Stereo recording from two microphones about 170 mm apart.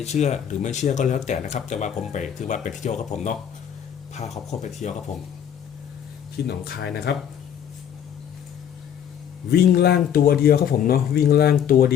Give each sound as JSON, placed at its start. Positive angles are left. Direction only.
{"t": 0.0, "sound": "speech", "side_deg": 40}
{"t": 4.4, "sound": "speech", "side_deg": 45}
{"t": 6.5, "sound": "speech", "side_deg": 70}
{"t": 9.5, "sound": "speech", "side_deg": 70}